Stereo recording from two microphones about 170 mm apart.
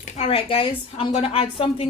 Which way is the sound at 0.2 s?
35° left (ahead or behind).